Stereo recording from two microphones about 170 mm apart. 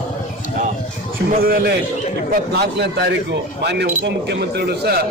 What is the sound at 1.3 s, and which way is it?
A man's voice, 60° right (ahead or behind).